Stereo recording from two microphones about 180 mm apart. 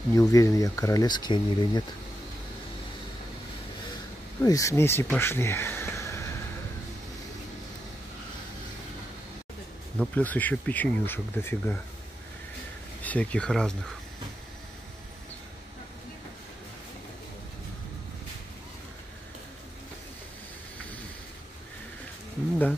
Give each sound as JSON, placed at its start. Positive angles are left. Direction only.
{"t": 0.1, "sound": "speech", "side_deg": 20}
{"t": 4.4, "sound": "speech", "side_deg": 20}
{"t": 9.9, "sound": "speech", "side_deg": 10}
{"t": 13.0, "sound": "speech", "side_deg": 5}